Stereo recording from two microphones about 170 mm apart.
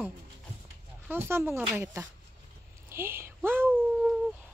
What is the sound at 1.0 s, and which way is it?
Speech, 15° right (ahead or behind).